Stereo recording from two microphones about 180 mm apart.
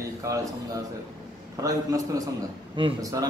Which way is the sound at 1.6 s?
20° right (ahead or behind).